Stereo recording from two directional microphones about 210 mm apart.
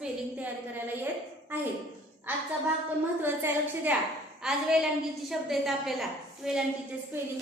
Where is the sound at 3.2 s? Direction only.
10° right (ahead or behind).